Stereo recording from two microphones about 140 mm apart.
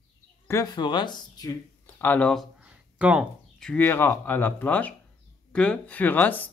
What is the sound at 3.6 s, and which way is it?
Speech, 10° left (ahead or behind).